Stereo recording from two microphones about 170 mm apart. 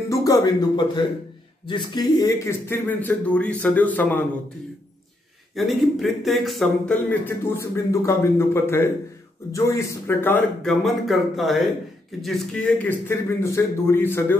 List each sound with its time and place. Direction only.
0.1 s speech: 20° left (ahead or behind)
5.5 s speech: centre (ahead or behind)